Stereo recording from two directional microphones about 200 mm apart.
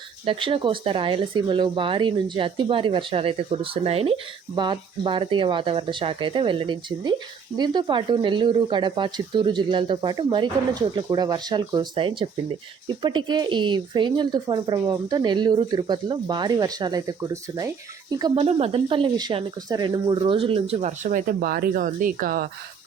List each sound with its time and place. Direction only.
0.3 s speech: 25° right (ahead or behind)
18.2 s speech: 30° right (ahead or behind); by 22.4 s 45° right (ahead or behind)